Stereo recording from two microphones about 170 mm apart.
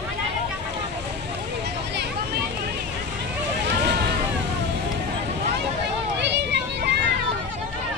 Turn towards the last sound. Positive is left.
turn(degrees=-80)